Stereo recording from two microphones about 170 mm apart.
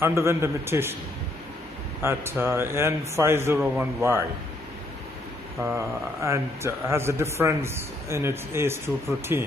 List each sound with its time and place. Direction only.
0.0 s a man's voice: 15° right (ahead or behind)
2.0 s a man's voice: 15° right (ahead or behind)
5.6 s a man's voice: 15° right (ahead or behind)